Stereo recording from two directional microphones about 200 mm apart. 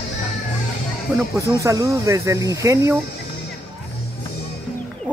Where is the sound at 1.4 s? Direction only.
15° right (ahead or behind).